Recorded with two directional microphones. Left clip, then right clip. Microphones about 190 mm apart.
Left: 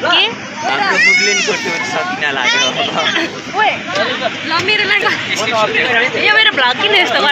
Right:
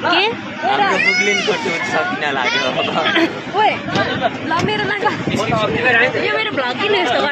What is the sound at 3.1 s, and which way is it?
Speech, 60° right (ahead or behind).